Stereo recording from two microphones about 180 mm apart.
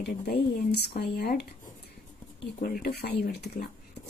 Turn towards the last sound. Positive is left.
turn(degrees=55)  # may be behind; listen again after turning